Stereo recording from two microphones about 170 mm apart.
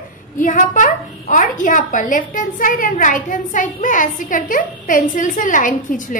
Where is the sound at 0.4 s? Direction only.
50° left (ahead or behind).